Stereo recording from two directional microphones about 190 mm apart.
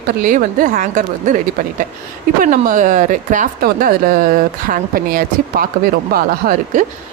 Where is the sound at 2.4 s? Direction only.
45° right (ahead or behind).